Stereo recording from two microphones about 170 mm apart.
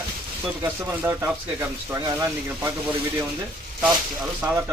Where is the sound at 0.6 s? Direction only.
15° right (ahead or behind).